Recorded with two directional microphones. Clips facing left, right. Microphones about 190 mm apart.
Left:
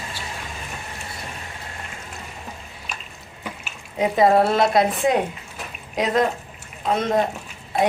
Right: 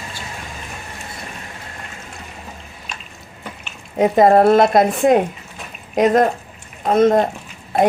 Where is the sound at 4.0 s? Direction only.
50° right (ahead or behind).